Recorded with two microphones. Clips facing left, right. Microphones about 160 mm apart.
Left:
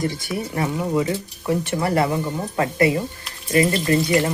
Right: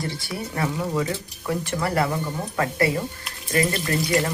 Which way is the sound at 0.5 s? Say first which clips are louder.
Left 3 dB; 20° left (ahead or behind).